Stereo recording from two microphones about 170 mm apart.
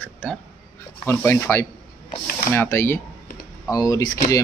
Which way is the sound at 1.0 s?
15° left (ahead or behind).